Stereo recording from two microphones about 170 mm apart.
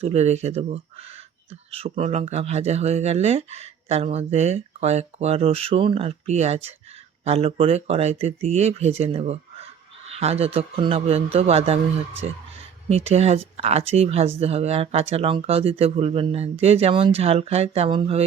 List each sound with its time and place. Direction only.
0.0 s speech: 40° right (ahead or behind)
12.9 s speech: 40° right (ahead or behind)